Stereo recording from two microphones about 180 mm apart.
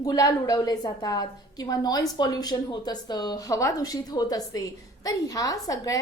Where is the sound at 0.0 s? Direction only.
20° left (ahead or behind).